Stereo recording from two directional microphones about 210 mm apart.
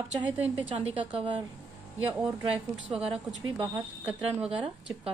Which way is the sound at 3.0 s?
30° right (ahead or behind).